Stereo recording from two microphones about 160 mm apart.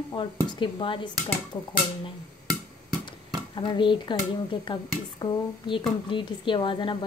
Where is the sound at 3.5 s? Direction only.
30° left (ahead or behind).